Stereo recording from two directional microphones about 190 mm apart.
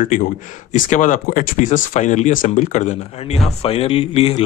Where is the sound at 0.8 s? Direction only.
40° left (ahead or behind).